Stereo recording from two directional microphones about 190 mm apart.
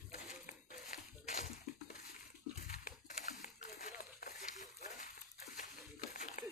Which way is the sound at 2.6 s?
40° left (ahead or behind).